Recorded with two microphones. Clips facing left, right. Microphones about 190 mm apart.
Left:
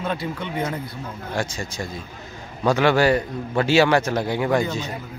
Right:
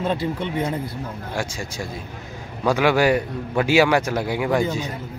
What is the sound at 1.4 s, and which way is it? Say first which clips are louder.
A man's voice: left 1 dB; 10° right (ahead or behind).